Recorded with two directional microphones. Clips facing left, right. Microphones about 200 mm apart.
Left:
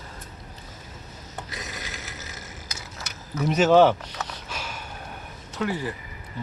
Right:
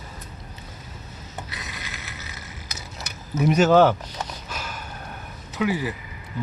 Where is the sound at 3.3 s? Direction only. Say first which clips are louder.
Right 4 dB; 15° right (ahead or behind).